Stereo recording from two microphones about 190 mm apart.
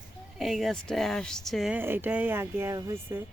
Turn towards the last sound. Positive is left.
turn(degrees=-15)  # may be behind; listen again after turning